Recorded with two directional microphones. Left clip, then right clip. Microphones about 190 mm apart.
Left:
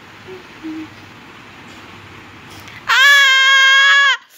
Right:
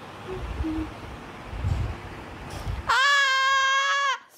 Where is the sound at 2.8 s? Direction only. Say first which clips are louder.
Left 11 dB; 5° right (ahead or behind).